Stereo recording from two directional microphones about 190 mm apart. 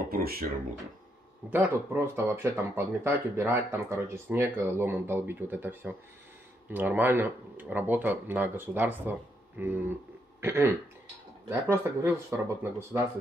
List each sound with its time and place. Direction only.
0.1 s speech: 50° right (ahead or behind)
1.5 s speech: 10° right (ahead or behind)